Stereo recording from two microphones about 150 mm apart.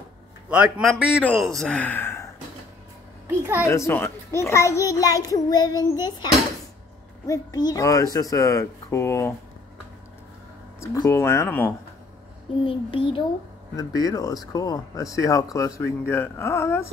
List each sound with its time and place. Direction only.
0.5 s a man's voice: 5° right (ahead or behind); by 2.2 s 15° left (ahead or behind)
3.3 s a child's voice: 15° right (ahead or behind)
3.6 s speech: 20° left (ahead or behind)
10.8 s speech: 15° left (ahead or behind)
12.6 s speech: 35° left (ahead or behind)
13.7 s speech: 25° left (ahead or behind)